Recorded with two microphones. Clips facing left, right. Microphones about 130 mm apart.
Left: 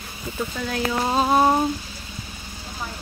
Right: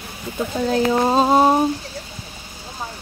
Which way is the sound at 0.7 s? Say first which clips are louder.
Right 7 dB; 30° right (ahead or behind).